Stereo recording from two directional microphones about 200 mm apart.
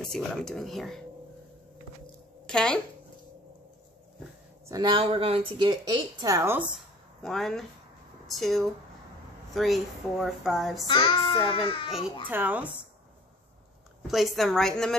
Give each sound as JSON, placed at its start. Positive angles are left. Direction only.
{"t": 0.0, "sound": "speech", "side_deg": 5}
{"t": 2.4, "sound": "speech", "side_deg": 5}
{"t": 4.6, "sound": "speech", "side_deg": -20}
{"t": 7.2, "sound": "speech", "side_deg": 0}
{"t": 10.9, "sound": "a child's voice", "side_deg": 25}
{"t": 12.3, "sound": "speech", "side_deg": -10}
{"t": 14.0, "sound": "speech", "side_deg": 0}